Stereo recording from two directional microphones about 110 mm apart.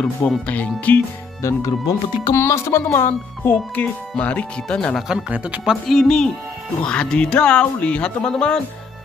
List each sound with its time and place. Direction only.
0.0 s speech: 15° left (ahead or behind)
1.4 s speech: 30° left (ahead or behind); by 5.0 s 5° left (ahead or behind)
5.0 s speech: 10° right (ahead or behind)
5.9 s speech: 5° left (ahead or behind)